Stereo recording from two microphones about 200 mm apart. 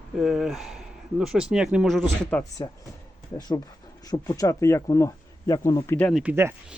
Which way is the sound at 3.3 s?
20° left (ahead or behind).